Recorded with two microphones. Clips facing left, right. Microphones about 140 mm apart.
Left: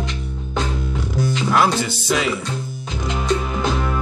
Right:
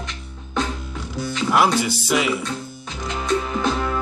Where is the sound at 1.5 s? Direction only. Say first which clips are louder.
Right 1 dB; 10° right (ahead or behind).